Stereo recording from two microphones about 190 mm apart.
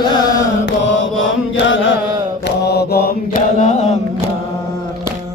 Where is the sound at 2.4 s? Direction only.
60° left (ahead or behind); by 4.3 s 35° left (ahead or behind).